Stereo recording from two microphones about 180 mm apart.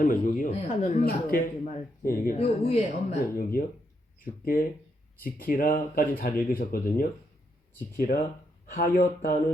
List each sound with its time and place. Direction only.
0.0 s speech: 50° left (ahead or behind)
3.6 s speech: 50° left (ahead or behind)